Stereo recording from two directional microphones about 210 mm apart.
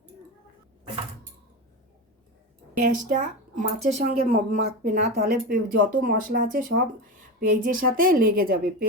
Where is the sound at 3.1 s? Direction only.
35° right (ahead or behind).